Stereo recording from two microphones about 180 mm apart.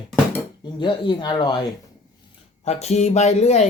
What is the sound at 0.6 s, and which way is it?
Speech, 25° left (ahead or behind).